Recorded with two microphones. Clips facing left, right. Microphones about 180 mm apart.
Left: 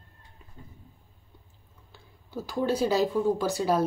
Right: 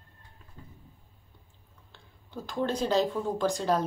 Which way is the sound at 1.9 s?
5° left (ahead or behind).